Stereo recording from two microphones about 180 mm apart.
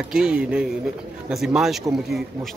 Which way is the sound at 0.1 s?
5° right (ahead or behind).